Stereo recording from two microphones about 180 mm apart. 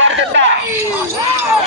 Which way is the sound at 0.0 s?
90° right.